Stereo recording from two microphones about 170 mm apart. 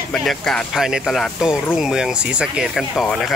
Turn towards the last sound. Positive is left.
turn(degrees=0)  # may be behind; listen again after turning